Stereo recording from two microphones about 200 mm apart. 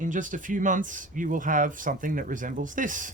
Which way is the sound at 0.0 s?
40° right (ahead or behind).